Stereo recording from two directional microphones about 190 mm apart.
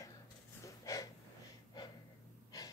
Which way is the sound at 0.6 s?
15° left (ahead or behind).